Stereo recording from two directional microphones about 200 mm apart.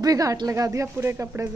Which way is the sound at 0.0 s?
15° right (ahead or behind).